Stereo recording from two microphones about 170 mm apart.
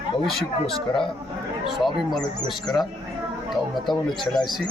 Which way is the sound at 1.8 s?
Centre (ahead or behind).